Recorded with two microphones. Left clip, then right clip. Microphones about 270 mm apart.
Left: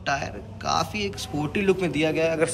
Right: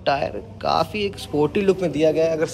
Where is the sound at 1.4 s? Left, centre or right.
Centre.